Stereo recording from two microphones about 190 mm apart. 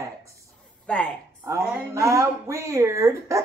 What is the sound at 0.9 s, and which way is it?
Speech, 5° left (ahead or behind).